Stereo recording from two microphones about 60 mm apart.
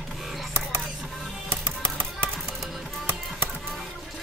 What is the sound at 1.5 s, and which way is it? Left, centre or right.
Music, right.